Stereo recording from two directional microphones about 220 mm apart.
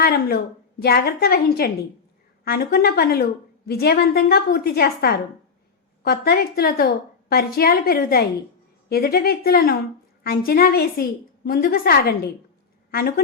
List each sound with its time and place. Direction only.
0.0 s a woman's voice: 45° left (ahead or behind)